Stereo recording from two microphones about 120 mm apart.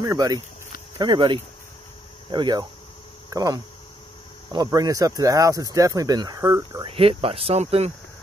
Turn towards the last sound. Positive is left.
turn(degrees=-60)  # may be behind; listen again after turning